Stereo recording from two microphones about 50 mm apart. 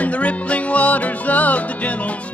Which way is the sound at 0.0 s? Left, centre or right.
Left.